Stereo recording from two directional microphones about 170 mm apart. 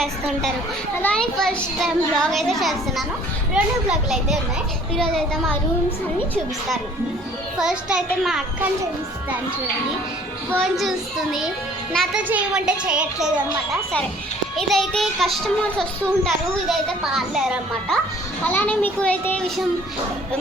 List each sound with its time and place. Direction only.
0.0 s a child's voice: centre (ahead or behind)
7.6 s a child's voice: 5° right (ahead or behind)
10.6 s a child's voice: centre (ahead or behind)
14.5 s a child's voice: centre (ahead or behind)